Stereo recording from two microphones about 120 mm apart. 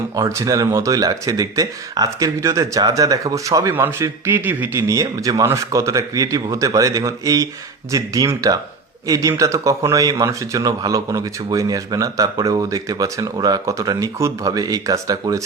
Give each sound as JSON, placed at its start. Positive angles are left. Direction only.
{"t": 0.2, "sound": "speech", "side_deg": -25}